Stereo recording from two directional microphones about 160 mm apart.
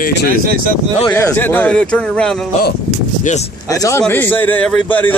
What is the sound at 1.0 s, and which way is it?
A man's voice, 15° left (ahead or behind).